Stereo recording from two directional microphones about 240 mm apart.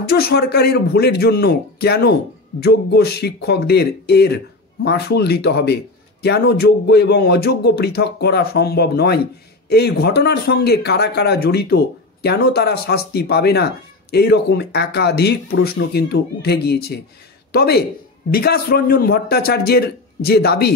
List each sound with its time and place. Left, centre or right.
0.0 s a man's voice: left